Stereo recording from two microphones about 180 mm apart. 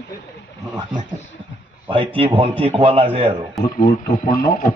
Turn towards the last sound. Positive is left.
turn(degrees=50)  # may be behind; listen again after turning